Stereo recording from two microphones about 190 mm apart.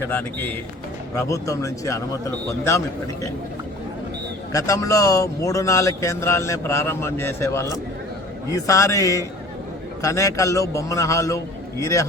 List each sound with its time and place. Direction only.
0.0 s speech: 10° left (ahead or behind)
4.5 s speech: 15° left (ahead or behind)